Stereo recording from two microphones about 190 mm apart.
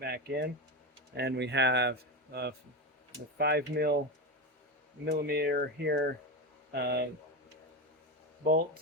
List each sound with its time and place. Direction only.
0.0 s speech: 60° right (ahead or behind)
5.0 s speech: 60° right (ahead or behind)
8.4 s speech: 50° right (ahead or behind)